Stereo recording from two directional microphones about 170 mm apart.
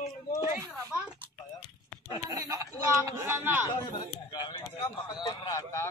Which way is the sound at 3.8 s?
25° left (ahead or behind).